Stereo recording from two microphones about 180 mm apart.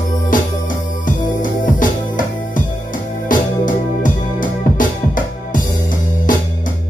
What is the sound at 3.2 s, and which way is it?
Music, 45° left (ahead or behind).